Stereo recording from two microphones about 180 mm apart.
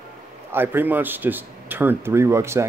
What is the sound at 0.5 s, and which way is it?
Speech, 10° right (ahead or behind).